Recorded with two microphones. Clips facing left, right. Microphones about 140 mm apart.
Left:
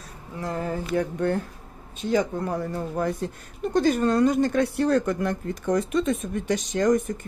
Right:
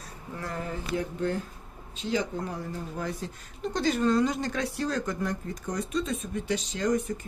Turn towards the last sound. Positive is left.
turn(degrees=50)  # may be behind; listen again after turning